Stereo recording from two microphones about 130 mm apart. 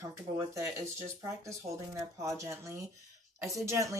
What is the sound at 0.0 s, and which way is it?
A woman's voice, 20° right (ahead or behind).